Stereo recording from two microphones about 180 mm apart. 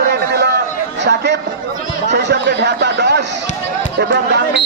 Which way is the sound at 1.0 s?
75° right (ahead or behind).